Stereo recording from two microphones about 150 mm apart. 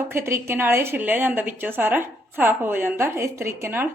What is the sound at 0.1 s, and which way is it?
A woman's voice, 15° right (ahead or behind).